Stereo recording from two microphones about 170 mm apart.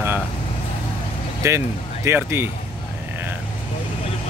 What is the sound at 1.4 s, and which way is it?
Speech, 15° right (ahead or behind).